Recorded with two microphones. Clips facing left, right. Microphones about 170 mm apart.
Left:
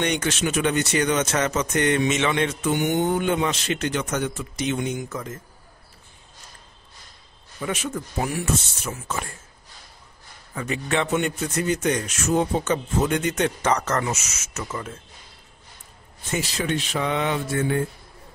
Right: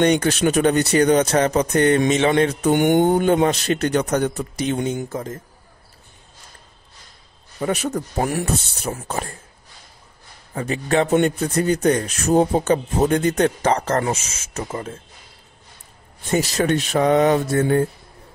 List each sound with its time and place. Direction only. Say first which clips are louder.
0.0 s a man's voice: right 7 dB; 35° right (ahead or behind)
2.7 s speech: right 7 dB; 50° right (ahead or behind)
3.1 s a man's voice: right 6 dB; 40° right (ahead or behind)
7.6 s a man's voice: right 6 dB; 40° right (ahead or behind)
10.5 s a man's voice: right 5 dB; 30° right (ahead or behind)
16.3 s a man's voice: right 7 dB; 40° right (ahead or behind)